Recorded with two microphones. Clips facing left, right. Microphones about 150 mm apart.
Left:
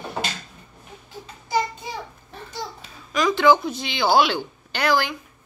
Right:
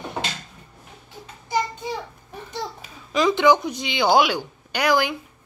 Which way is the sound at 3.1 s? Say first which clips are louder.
Even; 25° right (ahead or behind).